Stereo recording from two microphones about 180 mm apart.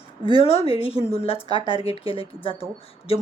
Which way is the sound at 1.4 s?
25° right (ahead or behind).